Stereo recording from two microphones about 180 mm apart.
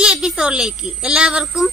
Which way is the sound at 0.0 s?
5° right (ahead or behind).